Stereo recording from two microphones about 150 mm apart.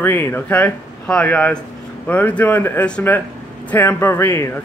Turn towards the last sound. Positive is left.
turn(degrees=15)  # may be behind; listen again after turning